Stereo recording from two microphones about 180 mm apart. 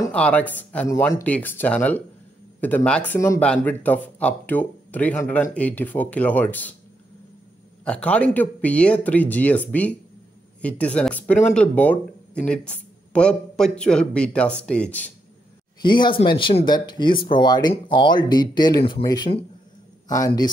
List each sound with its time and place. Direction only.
0.1 s speech: 5° left (ahead or behind)
7.8 s speech: 5° left (ahead or behind)
15.8 s speech: 25° left (ahead or behind)